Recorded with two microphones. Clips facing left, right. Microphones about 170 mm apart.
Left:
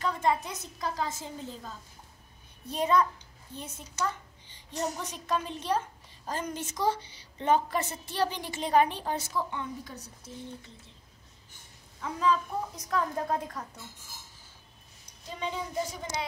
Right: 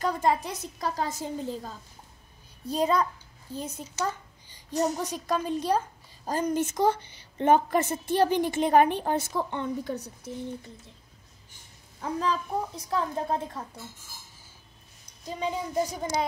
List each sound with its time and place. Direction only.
0.0 s a woman's voice: 35° right (ahead or behind); by 10.3 s 60° right (ahead or behind)
12.0 s a woman's voice: 35° right (ahead or behind)
15.2 s a woman's voice: 40° right (ahead or behind)